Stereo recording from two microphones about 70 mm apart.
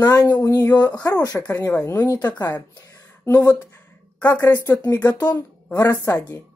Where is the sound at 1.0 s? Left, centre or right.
Left.